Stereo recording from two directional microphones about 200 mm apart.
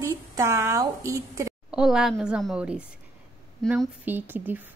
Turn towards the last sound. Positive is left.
turn(degrees=-10)  # may be behind; listen again after turning